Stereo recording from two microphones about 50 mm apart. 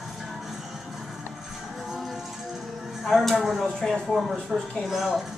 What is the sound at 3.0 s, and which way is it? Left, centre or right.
Speech, centre.